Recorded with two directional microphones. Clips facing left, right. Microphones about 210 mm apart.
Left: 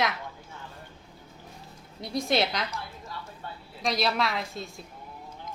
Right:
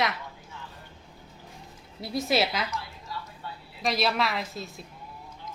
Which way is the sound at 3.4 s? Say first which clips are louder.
Left 2 dB; 50° left (ahead or behind).